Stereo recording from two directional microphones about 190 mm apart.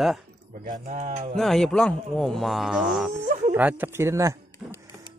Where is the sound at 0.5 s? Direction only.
45° right (ahead or behind).